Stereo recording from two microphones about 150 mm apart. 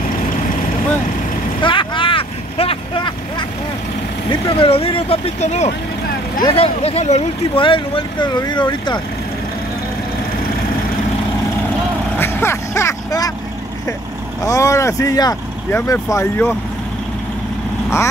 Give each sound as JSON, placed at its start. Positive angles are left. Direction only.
{"t": 1.6, "sound": "vehicle", "side_deg": 35}
{"t": 4.3, "sound": "speech", "side_deg": 35}
{"t": 12.2, "sound": "a sound", "side_deg": 15}
{"t": 14.4, "sound": "speech", "side_deg": 20}